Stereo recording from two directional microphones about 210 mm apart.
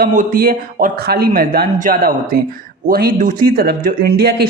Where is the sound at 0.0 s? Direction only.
40° right (ahead or behind).